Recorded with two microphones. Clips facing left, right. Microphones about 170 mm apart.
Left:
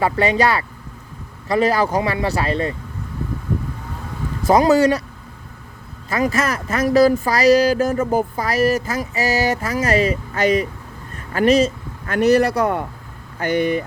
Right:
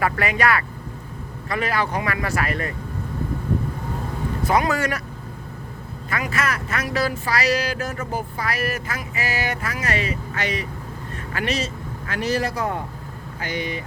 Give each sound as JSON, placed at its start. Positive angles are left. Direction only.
{"t": 0.0, "sound": "speech", "side_deg": 30}
{"t": 4.4, "sound": "speech", "side_deg": 35}
{"t": 6.1, "sound": "speech", "side_deg": 40}
{"t": 12.0, "sound": "a man's voice", "side_deg": 55}